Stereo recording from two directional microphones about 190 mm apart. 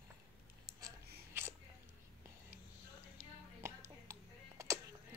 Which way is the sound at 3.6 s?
15° right (ahead or behind).